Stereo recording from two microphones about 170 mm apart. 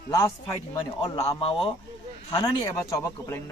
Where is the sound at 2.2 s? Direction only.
25° left (ahead or behind).